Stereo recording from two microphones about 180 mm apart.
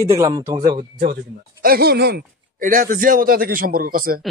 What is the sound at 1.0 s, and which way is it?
Speech, 55° right (ahead or behind).